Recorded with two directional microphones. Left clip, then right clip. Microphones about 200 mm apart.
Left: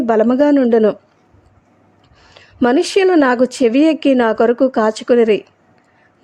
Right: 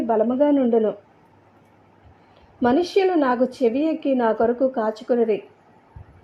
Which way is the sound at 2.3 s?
35° left (ahead or behind).